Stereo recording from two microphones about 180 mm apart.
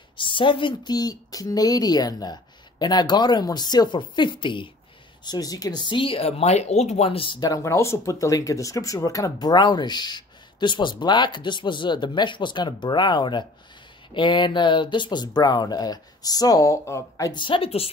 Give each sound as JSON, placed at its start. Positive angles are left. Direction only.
{"t": 0.2, "sound": "speech", "side_deg": 25}